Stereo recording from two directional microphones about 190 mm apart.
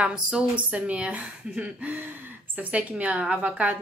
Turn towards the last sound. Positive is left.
turn(degrees=-10)  # may be behind; listen again after turning